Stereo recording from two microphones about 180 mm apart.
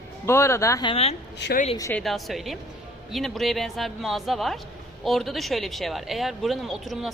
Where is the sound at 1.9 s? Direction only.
Centre (ahead or behind).